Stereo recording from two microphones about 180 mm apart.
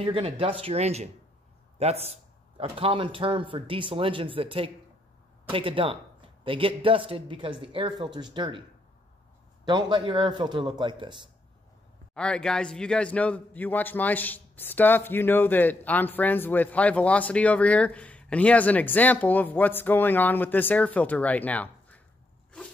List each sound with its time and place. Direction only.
0.0 s a man's voice: 30° right (ahead or behind)
9.7 s a man's voice: 25° right (ahead or behind)
12.1 s a man's voice: 5° left (ahead or behind)